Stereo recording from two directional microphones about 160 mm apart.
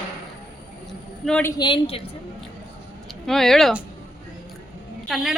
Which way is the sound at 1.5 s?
30° left (ahead or behind).